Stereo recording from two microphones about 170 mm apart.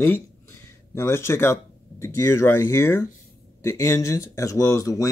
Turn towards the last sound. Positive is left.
turn(degrees=20)  # may be behind; listen again after turning